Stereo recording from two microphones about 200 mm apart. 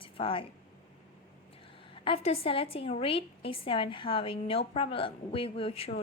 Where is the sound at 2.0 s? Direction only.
30° left (ahead or behind).